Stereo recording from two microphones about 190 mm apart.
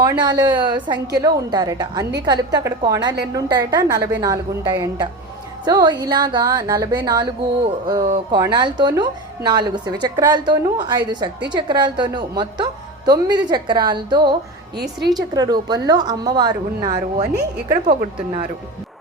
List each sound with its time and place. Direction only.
0.0 s a woman's voice: 20° right (ahead or behind)